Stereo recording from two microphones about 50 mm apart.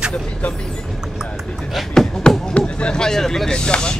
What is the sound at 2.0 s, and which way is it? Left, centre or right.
Speech, centre.